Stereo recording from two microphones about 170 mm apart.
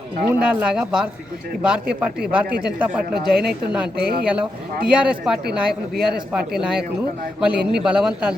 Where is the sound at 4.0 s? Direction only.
70° right (ahead or behind).